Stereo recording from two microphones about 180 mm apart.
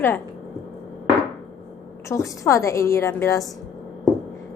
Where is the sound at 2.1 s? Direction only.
15° left (ahead or behind).